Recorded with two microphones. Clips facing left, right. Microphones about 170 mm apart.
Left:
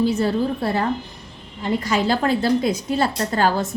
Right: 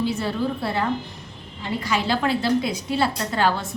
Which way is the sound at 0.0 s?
40° left (ahead or behind).